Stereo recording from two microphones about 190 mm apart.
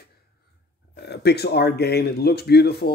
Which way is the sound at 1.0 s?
60° left (ahead or behind).